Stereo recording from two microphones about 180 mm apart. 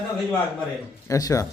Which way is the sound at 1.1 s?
20° left (ahead or behind).